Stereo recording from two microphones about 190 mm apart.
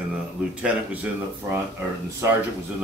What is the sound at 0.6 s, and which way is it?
Speech, 10° right (ahead or behind).